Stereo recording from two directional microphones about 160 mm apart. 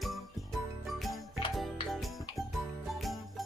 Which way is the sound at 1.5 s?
Centre (ahead or behind).